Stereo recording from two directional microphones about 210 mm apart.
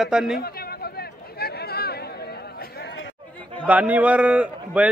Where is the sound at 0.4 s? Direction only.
45° left (ahead or behind).